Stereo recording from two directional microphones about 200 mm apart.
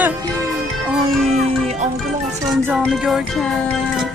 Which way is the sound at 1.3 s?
35° right (ahead or behind).